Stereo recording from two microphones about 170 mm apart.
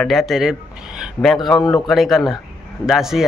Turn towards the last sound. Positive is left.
turn(degrees=0)  # may be behind; listen again after turning